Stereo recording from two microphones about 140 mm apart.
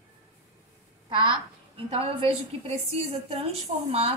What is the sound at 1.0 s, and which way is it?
A woman's voice, 35° right (ahead or behind).